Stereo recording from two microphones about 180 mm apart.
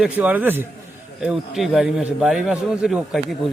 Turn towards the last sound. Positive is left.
turn(degrees=0)  # may be behind; listen again after turning